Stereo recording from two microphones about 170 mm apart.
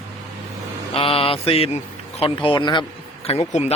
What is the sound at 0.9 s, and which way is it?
Speech, 35° left (ahead or behind).